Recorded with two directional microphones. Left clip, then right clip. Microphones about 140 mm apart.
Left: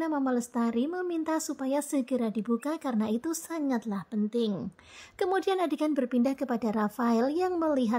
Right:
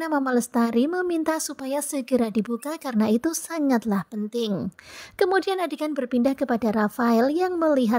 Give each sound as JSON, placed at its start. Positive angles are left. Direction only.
{"t": 0.0, "sound": "a woman's voice", "side_deg": -45}
{"t": 5.2, "sound": "a woman's voice", "side_deg": -35}